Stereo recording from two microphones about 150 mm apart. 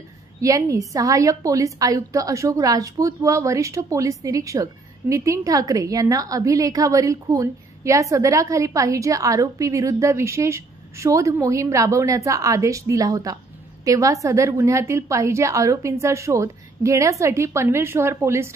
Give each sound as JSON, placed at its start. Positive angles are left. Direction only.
{"t": 0.4, "sound": "a woman's voice", "side_deg": -20}